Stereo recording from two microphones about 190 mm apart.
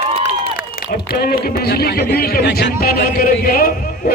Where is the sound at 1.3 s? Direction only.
55° left (ahead or behind).